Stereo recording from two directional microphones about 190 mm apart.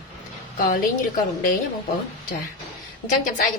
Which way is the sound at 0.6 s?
45° left (ahead or behind).